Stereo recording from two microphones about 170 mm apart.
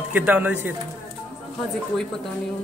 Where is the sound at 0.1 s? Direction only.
10° right (ahead or behind).